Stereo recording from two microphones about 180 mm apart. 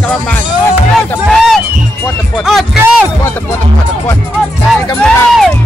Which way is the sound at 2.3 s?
Centre (ahead or behind).